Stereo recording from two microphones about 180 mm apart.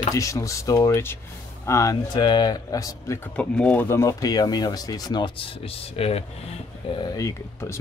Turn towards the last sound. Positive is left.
turn(degrees=15)  # may be behind; listen again after turning